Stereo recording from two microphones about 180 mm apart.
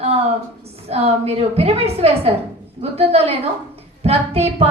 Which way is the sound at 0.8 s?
35° right (ahead or behind).